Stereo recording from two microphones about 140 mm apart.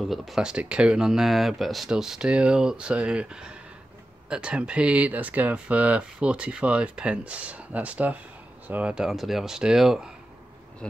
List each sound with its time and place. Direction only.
0.0 s speech: centre (ahead or behind)
10.8 s speech: 5° left (ahead or behind)